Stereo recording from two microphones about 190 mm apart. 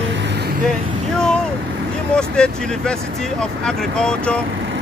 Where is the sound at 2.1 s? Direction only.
5° left (ahead or behind).